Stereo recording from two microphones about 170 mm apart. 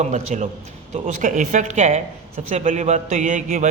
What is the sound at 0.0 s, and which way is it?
A man's voice, 45° right (ahead or behind).